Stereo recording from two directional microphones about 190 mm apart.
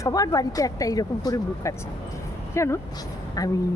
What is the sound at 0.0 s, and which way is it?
A woman's voice, 20° left (ahead or behind).